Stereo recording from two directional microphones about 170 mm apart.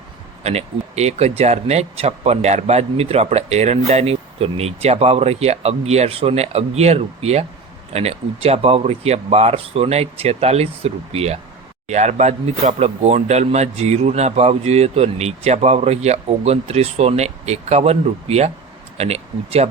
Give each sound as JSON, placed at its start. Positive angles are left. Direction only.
{"t": 0.4, "sound": "speech", "side_deg": -40}